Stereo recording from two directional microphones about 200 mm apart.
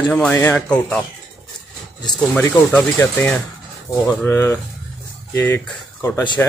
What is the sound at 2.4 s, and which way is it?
Speech, 10° left (ahead or behind).